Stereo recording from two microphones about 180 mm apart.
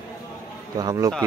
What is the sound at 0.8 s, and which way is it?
Speech, 20° right (ahead or behind).